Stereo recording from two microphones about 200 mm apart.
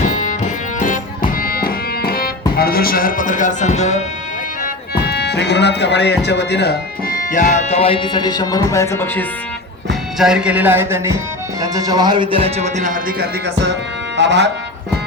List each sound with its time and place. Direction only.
0.8 s music: 40° left (ahead or behind)
2.6 s speech: 50° left (ahead or behind)
4.6 s speech: 55° left (ahead or behind)
7.3 s speech: 35° left (ahead or behind); by 9.2 s 10° left (ahead or behind)
10.2 s speech: 5° right (ahead or behind); by 14.5 s 60° right (ahead or behind)